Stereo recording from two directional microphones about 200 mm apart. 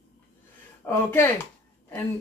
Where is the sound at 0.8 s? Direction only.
10° left (ahead or behind).